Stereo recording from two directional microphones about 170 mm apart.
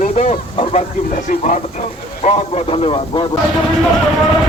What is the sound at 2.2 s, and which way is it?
A man's voice, 35° left (ahead or behind).